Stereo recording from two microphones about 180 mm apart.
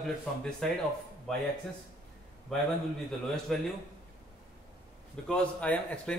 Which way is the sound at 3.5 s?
Centre (ahead or behind).